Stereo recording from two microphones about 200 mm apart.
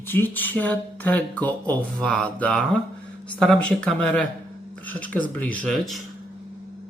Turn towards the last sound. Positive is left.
turn(degrees=0)  # may be behind; listen again after turning